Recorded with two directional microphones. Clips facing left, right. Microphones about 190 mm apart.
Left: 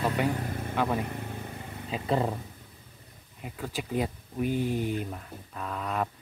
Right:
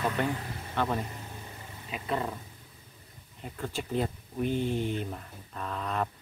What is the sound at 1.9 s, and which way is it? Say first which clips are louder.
Speech: left 5 dB; 30° left (ahead or behind).